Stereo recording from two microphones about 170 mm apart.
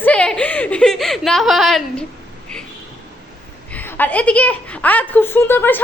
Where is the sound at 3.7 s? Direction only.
10° left (ahead or behind).